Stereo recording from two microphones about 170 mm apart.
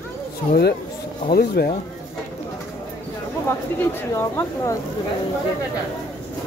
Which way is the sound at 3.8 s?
15° left (ahead or behind).